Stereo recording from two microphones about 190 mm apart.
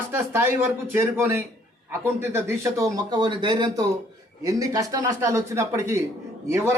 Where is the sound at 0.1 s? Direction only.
10° right (ahead or behind).